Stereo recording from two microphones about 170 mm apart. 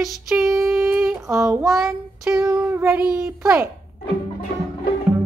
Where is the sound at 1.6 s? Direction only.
Centre (ahead or behind).